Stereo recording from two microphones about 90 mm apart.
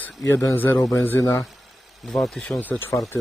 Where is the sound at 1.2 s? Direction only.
35° left (ahead or behind).